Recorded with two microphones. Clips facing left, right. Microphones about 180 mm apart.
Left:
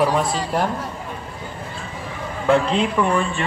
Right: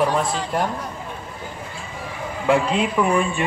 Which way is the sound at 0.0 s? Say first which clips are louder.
Left 1 dB; 5° left (ahead or behind).